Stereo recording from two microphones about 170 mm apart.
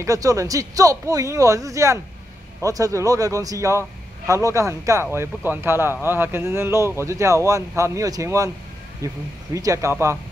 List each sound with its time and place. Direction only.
0.0 s a man's voice: 20° right (ahead or behind)